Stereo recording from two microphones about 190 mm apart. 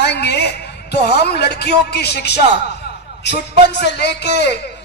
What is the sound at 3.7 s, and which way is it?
Speech, 60° left (ahead or behind).